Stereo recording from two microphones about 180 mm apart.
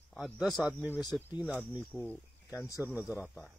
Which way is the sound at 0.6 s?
10° right (ahead or behind).